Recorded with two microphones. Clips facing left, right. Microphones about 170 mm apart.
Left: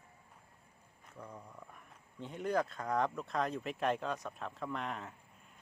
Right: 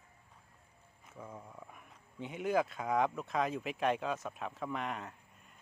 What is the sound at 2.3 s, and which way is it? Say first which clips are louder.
Speech: right 2 dB; 5° right (ahead or behind).